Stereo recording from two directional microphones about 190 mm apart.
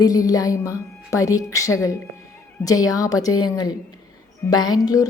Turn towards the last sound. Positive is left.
turn(degrees=20)  # may be behind; listen again after turning